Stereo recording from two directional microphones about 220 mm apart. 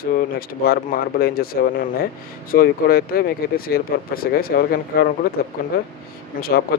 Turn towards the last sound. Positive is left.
turn(degrees=45)  # may be behind; listen again after turning